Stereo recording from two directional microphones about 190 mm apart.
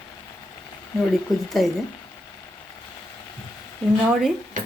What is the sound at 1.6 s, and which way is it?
Speech, centre (ahead or behind).